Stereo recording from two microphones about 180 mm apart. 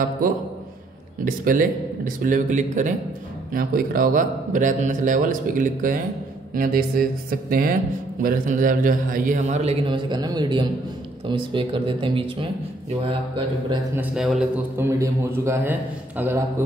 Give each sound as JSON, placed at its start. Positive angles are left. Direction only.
{"t": 1.2, "sound": "a man's voice", "side_deg": -50}
{"t": 13.9, "sound": "a man's voice", "side_deg": 0}
{"t": 14.8, "sound": "a man's voice", "side_deg": -15}